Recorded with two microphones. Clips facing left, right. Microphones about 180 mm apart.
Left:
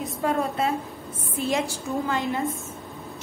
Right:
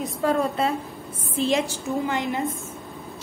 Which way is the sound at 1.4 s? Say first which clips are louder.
Right 3 dB; 20° right (ahead or behind).